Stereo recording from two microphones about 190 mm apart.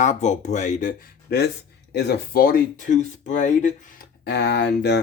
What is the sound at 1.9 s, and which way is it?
Speech, 60° left (ahead or behind).